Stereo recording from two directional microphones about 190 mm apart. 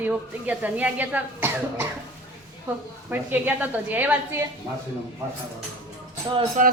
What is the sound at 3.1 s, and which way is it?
A woman's voice, 10° right (ahead or behind).